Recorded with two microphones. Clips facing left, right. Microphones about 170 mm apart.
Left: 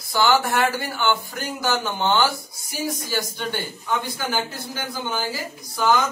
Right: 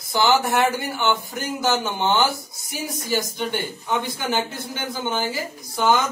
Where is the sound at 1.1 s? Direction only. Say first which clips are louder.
Even; centre (ahead or behind).